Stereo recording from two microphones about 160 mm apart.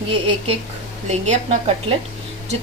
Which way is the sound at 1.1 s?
45° right (ahead or behind).